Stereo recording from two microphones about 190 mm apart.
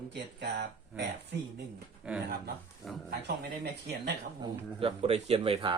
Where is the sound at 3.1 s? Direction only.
55° right (ahead or behind).